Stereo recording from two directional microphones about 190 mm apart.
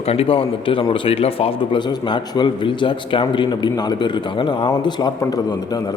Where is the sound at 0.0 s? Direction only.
30° left (ahead or behind).